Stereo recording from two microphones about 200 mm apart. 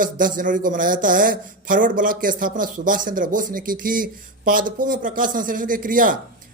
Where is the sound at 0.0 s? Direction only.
45° right (ahead or behind).